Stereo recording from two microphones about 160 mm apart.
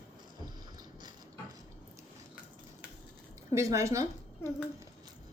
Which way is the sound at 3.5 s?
20° right (ahead or behind).